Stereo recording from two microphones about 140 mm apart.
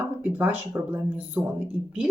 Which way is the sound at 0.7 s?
20° right (ahead or behind).